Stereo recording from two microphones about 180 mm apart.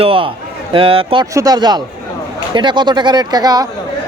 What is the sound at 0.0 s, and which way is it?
A man's voice, 30° right (ahead or behind).